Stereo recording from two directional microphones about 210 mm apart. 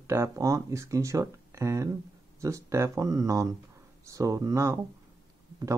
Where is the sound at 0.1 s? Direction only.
15° right (ahead or behind).